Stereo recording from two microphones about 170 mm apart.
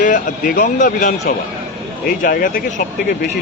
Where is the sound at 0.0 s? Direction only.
50° left (ahead or behind).